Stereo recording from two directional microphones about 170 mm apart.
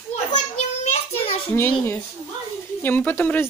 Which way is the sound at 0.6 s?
40° left (ahead or behind).